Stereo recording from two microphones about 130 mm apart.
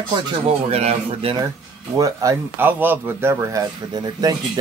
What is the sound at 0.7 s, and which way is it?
Speech, 50° right (ahead or behind).